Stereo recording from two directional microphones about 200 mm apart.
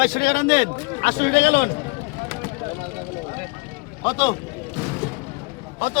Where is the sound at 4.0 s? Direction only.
25° left (ahead or behind).